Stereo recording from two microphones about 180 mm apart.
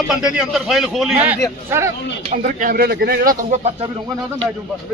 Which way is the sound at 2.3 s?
45° right (ahead or behind).